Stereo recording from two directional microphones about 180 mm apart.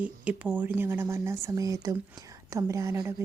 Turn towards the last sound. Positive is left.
turn(degrees=-15)  # may be behind; listen again after turning